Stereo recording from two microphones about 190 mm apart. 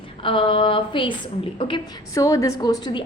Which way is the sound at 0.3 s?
25° left (ahead or behind).